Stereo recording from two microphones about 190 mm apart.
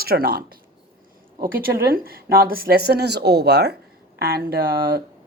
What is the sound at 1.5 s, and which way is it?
A woman's voice, 50° right (ahead or behind).